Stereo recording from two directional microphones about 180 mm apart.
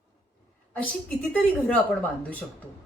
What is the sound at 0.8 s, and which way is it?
A woman's voice, 5° left (ahead or behind).